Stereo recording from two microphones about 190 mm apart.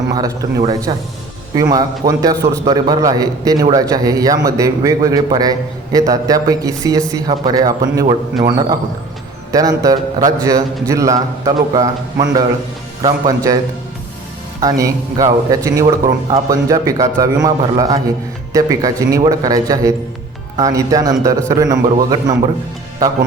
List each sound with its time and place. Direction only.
0.1 s a man's voice: 20° right (ahead or behind)
13.0 s a man's voice: 20° right (ahead or behind)
14.6 s a man's voice: 20° right (ahead or behind)